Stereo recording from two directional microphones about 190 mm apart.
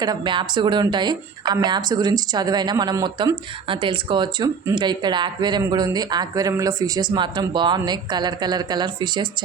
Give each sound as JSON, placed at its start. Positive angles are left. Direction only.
{"t": 0.0, "sound": "a woman's voice", "side_deg": -20}